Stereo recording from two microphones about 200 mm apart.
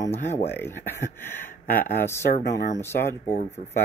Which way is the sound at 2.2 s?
40° left (ahead or behind).